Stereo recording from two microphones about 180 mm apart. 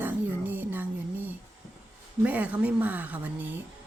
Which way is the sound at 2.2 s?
10° right (ahead or behind).